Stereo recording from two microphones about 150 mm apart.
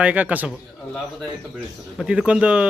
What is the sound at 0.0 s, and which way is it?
Speech, 10° right (ahead or behind).